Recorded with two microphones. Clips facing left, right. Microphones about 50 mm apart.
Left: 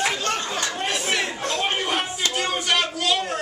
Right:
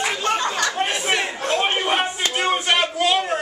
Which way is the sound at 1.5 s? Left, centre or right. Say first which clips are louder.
Right 5 dB; right.